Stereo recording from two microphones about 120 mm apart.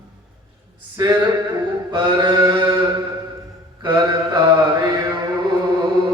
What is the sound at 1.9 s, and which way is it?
Mantra, 35° right (ahead or behind).